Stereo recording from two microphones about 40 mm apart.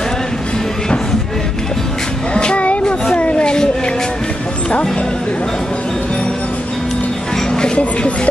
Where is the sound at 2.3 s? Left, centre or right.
Left.